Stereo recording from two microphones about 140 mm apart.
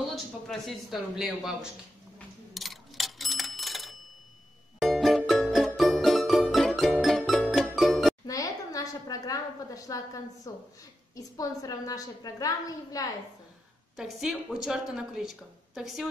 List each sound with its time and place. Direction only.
0.1 s speech: centre (ahead or behind)
2.5 s clock: centre (ahead or behind)
4.7 s music: centre (ahead or behind)
8.3 s a sound: 25° left (ahead or behind)
11.1 s a woman's voice: 25° left (ahead or behind)
13.9 s a woman's voice: 5° right (ahead or behind)